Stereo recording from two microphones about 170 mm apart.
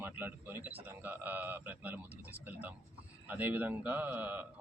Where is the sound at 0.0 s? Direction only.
10° right (ahead or behind).